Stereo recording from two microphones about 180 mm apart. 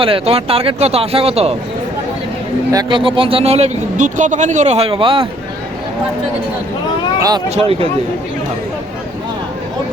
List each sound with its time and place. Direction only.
0.0 s speech: 30° right (ahead or behind)
2.7 s speech: 30° right (ahead or behind)
7.2 s speech: 20° right (ahead or behind)
7.5 s speech: 35° right (ahead or behind)